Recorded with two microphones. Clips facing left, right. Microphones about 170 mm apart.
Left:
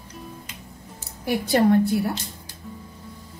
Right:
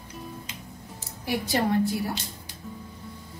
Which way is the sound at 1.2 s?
55° left (ahead or behind).